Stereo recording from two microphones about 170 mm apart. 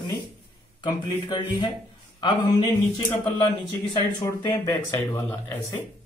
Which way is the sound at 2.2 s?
25° left (ahead or behind).